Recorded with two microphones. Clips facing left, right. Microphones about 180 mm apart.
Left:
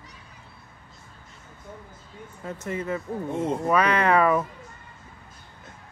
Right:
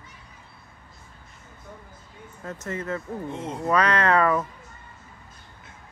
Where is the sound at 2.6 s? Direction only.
10° left (ahead or behind).